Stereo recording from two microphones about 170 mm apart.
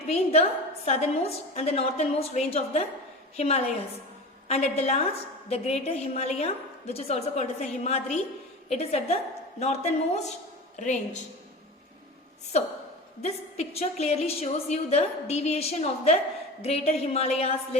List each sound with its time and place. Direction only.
0.1 s a woman's voice: 35° left (ahead or behind)
13.2 s a woman's voice: 40° left (ahead or behind)